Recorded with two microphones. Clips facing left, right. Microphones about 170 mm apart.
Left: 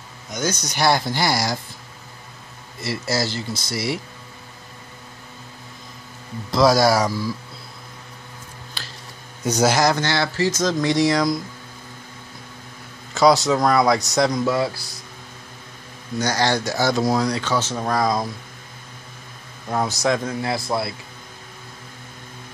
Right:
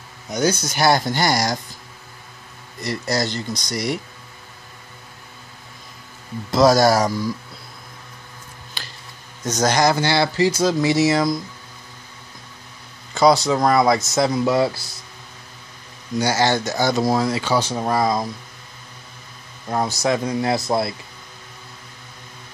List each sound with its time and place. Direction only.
0.4 s speech: 10° right (ahead or behind)
2.8 s speech: 5° left (ahead or behind)
6.5 s speech: centre (ahead or behind)
8.8 s a sound: centre (ahead or behind)
9.4 s speech: 10° left (ahead or behind)
9.9 s speech: 10° right (ahead or behind)
13.1 s speech: centre (ahead or behind)
14.4 s speech: 20° right (ahead or behind)
16.2 s speech: 5° right (ahead or behind)
19.7 s speech: centre (ahead or behind)
20.5 s speech: 20° right (ahead or behind)